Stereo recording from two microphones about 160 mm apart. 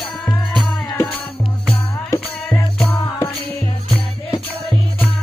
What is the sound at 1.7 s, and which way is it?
Music, 10° left (ahead or behind).